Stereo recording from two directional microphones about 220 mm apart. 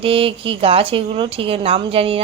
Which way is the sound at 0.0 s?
25° right (ahead or behind).